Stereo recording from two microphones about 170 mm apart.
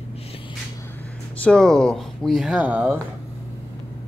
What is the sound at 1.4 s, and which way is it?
Speech, 5° left (ahead or behind).